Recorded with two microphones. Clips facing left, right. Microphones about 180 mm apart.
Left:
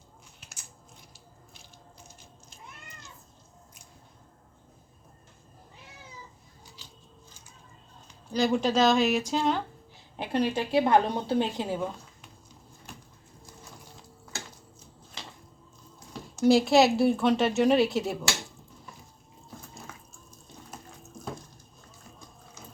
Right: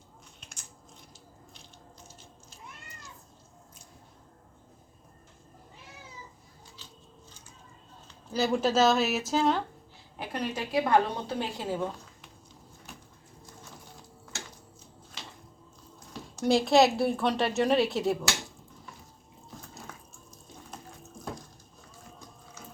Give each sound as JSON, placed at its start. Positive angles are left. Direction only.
{"t": 0.3, "sound": "crushing", "side_deg": 5}
{"t": 2.0, "sound": "biting", "side_deg": 15}
{"t": 8.3, "sound": "a woman's voice", "side_deg": -5}
{"t": 10.2, "sound": "a woman's voice", "side_deg": 30}
{"t": 16.4, "sound": "a woman's voice", "side_deg": 0}